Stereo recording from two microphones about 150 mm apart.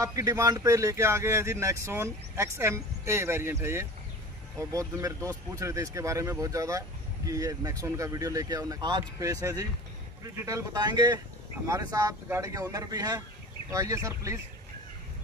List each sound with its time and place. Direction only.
0.0 s speech: 20° right (ahead or behind)